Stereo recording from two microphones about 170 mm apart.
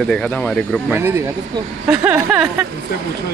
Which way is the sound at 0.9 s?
15° right (ahead or behind).